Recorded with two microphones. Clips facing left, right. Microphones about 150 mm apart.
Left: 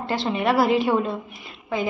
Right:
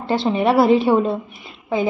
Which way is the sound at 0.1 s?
30° right (ahead or behind).